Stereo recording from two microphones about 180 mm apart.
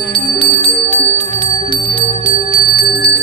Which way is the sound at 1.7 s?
30° left (ahead or behind).